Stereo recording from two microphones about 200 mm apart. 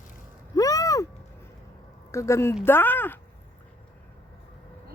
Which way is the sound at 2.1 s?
15° left (ahead or behind).